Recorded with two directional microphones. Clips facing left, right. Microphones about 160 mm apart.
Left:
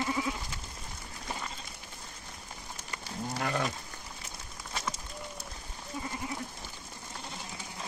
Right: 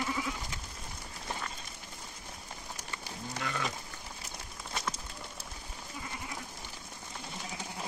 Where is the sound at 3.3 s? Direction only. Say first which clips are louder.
Left 4 dB; 50° left (ahead or behind).